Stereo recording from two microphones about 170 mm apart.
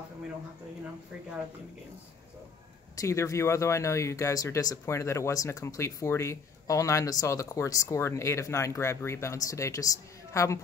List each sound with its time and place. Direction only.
3.0 s speech: 20° left (ahead or behind)